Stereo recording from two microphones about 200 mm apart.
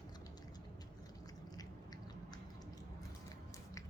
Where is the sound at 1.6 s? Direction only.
20° left (ahead or behind).